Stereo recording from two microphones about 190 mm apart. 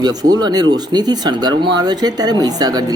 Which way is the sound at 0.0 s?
20° right (ahead or behind).